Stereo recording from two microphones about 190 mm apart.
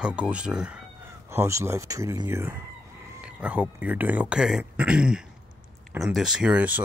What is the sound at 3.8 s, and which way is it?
Speech, 10° right (ahead or behind).